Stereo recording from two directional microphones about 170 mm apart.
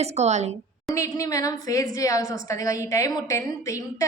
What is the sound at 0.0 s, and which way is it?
Speech, 40° right (ahead or behind).